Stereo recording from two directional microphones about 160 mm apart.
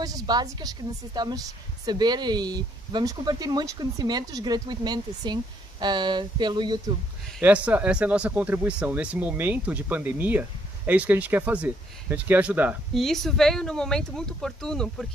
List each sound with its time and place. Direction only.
0.0 s a woman's voice: 25° right (ahead or behind)
7.3 s speech: 10° right (ahead or behind)